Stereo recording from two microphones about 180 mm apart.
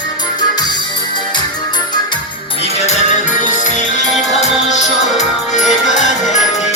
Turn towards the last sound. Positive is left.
turn(degrees=40)  # may be behind; listen again after turning